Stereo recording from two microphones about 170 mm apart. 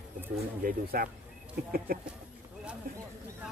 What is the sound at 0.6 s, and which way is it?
Speech, 60° right (ahead or behind).